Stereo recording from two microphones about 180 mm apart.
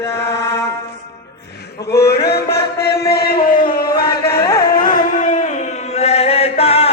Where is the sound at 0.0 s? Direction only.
15° left (ahead or behind).